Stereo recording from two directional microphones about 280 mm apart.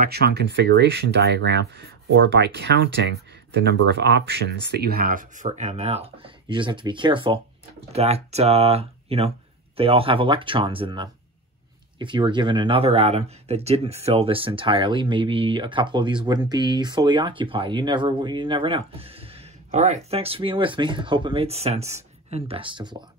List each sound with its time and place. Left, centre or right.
0.0 s speech: right; by 23.0 s centre